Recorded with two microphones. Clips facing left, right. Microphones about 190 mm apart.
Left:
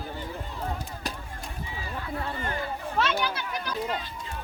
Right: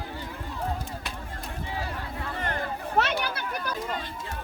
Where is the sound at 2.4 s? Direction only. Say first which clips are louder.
Right 1 dB; 65° right (ahead or behind).